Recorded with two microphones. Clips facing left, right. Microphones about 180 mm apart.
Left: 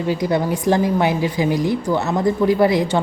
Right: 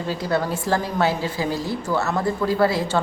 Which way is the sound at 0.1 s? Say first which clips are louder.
Left 4 dB; 15° left (ahead or behind).